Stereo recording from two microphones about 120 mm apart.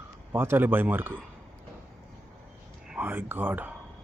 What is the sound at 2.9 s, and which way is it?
Speech, 15° right (ahead or behind).